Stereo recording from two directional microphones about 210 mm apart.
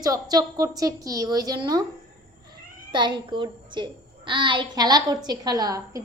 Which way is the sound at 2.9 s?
20° right (ahead or behind).